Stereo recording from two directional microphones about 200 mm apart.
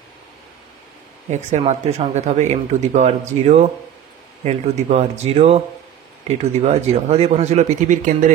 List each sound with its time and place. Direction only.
1.3 s speech: 35° right (ahead or behind)